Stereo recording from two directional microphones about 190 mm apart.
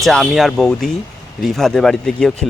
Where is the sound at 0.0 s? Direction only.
Centre (ahead or behind).